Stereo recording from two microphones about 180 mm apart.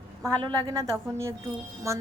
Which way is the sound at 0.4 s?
20° right (ahead or behind).